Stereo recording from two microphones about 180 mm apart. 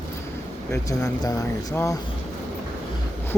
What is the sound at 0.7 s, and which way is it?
Speech, 20° left (ahead or behind).